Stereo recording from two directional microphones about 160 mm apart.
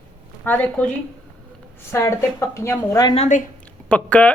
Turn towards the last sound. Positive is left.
turn(degrees=10)  # may be behind; listen again after turning